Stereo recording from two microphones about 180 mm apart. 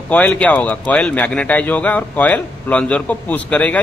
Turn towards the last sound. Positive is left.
turn(degrees=10)  # may be behind; listen again after turning